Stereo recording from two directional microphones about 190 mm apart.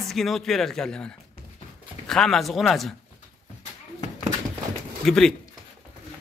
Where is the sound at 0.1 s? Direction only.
Centre (ahead or behind).